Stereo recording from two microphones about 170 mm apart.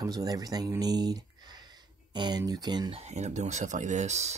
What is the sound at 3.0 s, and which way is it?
Speech, 40° right (ahead or behind).